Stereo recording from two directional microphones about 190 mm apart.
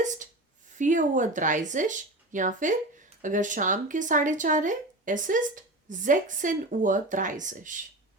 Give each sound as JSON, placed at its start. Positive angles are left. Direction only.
{"t": 0.8, "sound": "speech", "side_deg": -40}